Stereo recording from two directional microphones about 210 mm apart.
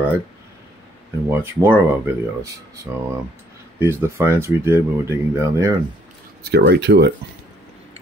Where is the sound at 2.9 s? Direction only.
15° right (ahead or behind).